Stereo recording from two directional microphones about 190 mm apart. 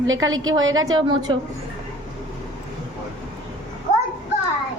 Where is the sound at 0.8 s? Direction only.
25° right (ahead or behind).